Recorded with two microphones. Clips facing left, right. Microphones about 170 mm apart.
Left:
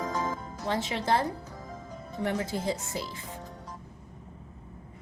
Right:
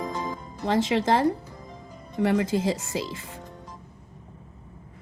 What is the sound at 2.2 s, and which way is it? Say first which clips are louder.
Speech: right 7 dB; 90° right.